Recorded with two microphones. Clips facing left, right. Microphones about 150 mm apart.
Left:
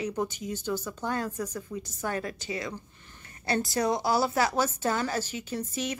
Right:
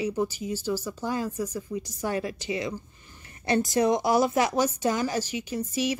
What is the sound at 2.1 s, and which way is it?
Speech, 45° left (ahead or behind).